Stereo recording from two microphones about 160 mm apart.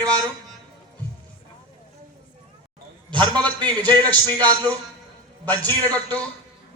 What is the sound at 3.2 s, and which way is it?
A man's voice, 10° left (ahead or behind).